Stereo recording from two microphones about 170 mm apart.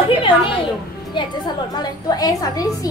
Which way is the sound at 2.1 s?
20° left (ahead or behind).